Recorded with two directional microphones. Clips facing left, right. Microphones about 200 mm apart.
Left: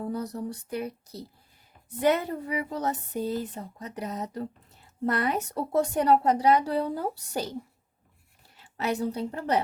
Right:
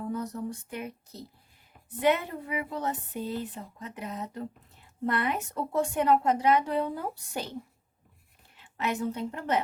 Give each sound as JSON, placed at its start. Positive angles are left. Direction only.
{"t": 0.1, "sound": "a woman's voice", "side_deg": 35}
{"t": 8.5, "sound": "a woman's voice", "side_deg": 35}